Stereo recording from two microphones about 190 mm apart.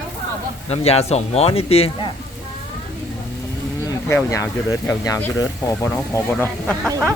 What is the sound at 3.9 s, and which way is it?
Speech, 15° left (ahead or behind).